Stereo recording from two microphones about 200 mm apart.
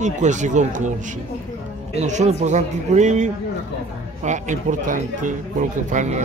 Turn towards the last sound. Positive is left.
turn(degrees=-35)  # may be behind; listen again after turning